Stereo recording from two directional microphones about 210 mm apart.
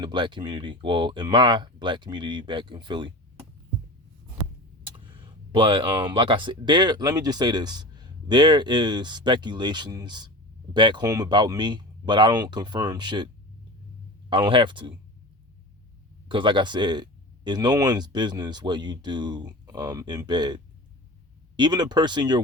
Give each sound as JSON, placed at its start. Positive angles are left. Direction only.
{"t": 0.0, "sound": "speech", "side_deg": -20}
{"t": 4.8, "sound": "speech", "side_deg": -25}
{"t": 16.3, "sound": "speech", "side_deg": -20}